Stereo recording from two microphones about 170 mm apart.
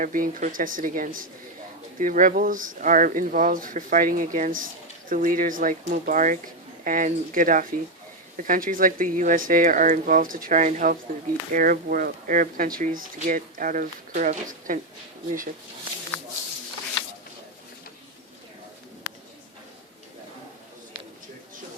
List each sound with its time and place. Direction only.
0.0 s speech: 55° right (ahead or behind)